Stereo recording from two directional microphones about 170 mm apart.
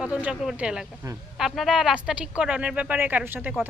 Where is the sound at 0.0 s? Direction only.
5° right (ahead or behind).